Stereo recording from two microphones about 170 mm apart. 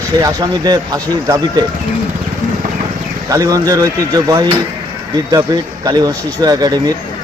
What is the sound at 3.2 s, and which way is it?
Speech, 20° right (ahead or behind).